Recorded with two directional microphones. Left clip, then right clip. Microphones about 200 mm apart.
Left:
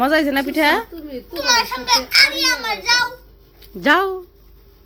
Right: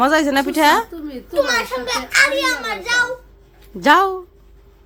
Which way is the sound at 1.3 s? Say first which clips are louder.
Even; 20° right (ahead or behind).